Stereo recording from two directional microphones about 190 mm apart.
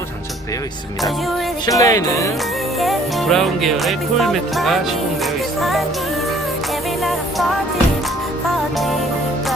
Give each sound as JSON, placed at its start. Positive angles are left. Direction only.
{"t": 1.6, "sound": "speech", "side_deg": 20}
{"t": 2.8, "sound": "music", "side_deg": 0}